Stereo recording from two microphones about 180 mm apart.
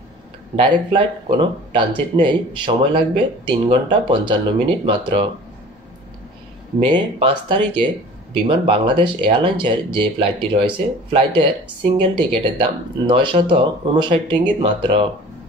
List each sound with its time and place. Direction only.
0.6 s speech: 25° right (ahead or behind)
6.9 s speech: 25° right (ahead or behind)